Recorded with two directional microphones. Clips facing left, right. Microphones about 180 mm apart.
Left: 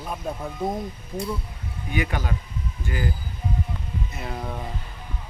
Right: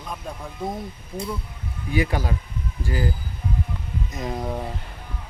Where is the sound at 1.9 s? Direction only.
35° right (ahead or behind).